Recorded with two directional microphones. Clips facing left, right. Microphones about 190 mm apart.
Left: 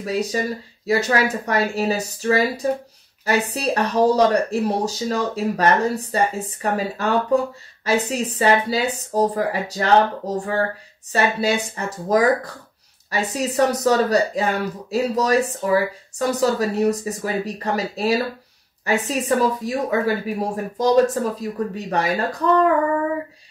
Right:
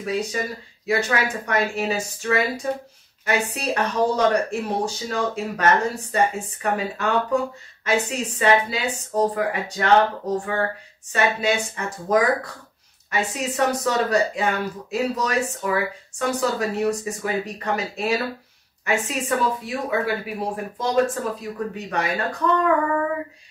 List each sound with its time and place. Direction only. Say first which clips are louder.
0.0 s speech: left 3 dB; 35° left (ahead or behind)